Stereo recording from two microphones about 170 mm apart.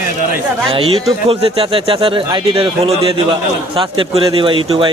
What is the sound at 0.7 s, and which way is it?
Speech, 30° right (ahead or behind).